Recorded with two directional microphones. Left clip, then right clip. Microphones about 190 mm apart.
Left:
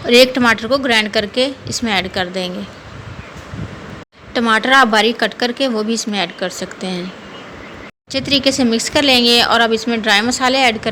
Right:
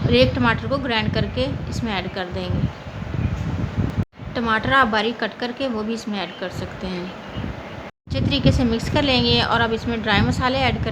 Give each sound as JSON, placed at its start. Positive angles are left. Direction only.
{"t": 0.1, "sound": "a woman's voice", "side_deg": 25}
{"t": 4.4, "sound": "a woman's voice", "side_deg": 25}
{"t": 8.1, "sound": "a woman's voice", "side_deg": 25}